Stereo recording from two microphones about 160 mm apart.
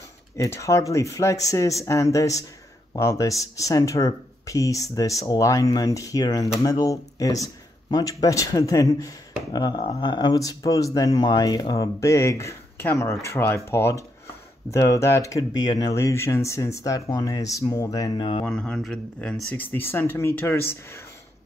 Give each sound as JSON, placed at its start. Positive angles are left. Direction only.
{"t": 0.4, "sound": "speech", "side_deg": 20}
{"t": 18.4, "sound": "speech", "side_deg": 5}
{"t": 19.5, "sound": "speech", "side_deg": 15}